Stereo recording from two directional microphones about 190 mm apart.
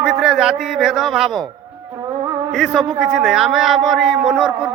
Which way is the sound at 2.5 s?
Centre (ahead or behind).